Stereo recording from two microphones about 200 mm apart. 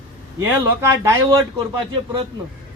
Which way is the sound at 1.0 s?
15° right (ahead or behind).